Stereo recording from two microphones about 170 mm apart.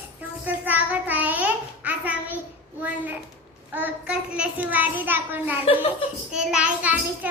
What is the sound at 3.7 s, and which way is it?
A child's voice, 10° right (ahead or behind).